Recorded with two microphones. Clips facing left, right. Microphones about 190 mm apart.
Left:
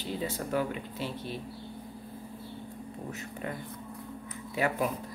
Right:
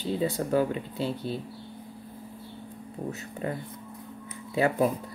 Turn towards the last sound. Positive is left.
turn(degrees=-30)  # may be behind; listen again after turning